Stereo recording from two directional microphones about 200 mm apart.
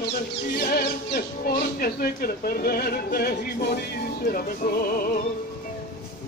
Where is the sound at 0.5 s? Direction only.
45° left (ahead or behind).